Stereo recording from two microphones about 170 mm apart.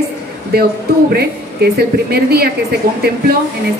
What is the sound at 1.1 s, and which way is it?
Speech, 65° right (ahead or behind).